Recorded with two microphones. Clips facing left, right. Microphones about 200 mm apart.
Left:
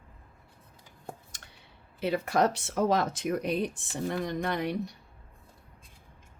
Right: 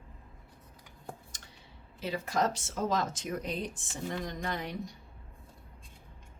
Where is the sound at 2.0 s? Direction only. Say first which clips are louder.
Left 5 dB; 65° left (ahead or behind).